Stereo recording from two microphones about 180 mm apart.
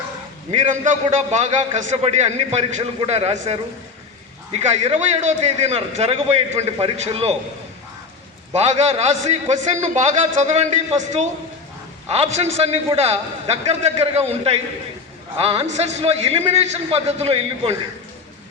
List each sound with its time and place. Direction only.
0.5 s a man's voice: 45° right (ahead or behind)
4.5 s a man's voice: 40° right (ahead or behind)
8.5 s a man's voice: 35° right (ahead or behind)